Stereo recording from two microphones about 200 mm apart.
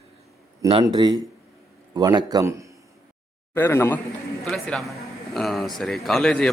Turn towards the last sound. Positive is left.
turn(degrees=5)  # may be behind; listen again after turning